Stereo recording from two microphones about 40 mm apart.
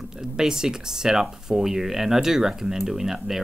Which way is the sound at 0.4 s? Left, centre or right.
Centre.